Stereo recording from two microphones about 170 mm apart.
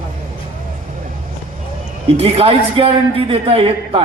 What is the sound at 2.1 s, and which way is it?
A man's voice, 35° right (ahead or behind).